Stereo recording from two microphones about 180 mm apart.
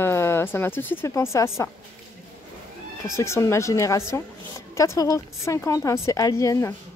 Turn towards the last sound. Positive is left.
turn(degrees=15)  # may be behind; listen again after turning